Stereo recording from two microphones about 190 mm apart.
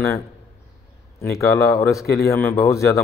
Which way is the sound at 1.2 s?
15° left (ahead or behind).